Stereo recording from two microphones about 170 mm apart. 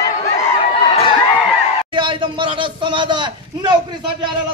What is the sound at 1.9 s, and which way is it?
A man's voice, 30° right (ahead or behind).